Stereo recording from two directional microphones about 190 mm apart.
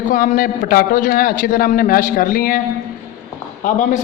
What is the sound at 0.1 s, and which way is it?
A man's voice, 45° left (ahead or behind).